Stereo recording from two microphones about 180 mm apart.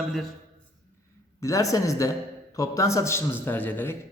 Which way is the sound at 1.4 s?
15° left (ahead or behind).